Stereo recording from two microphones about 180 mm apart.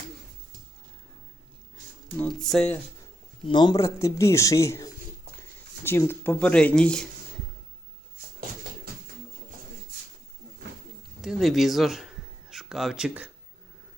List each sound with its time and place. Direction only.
2.1 s speech: 5° left (ahead or behind)
3.4 s speech: 25° left (ahead or behind); by 7.1 s 5° left (ahead or behind)
11.2 s speech: centre (ahead or behind)